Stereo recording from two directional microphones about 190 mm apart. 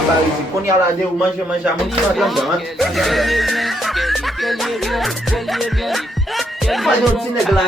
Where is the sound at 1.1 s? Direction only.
5° right (ahead or behind).